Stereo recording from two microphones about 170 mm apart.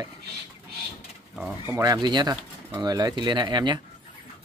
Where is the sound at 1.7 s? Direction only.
20° right (ahead or behind).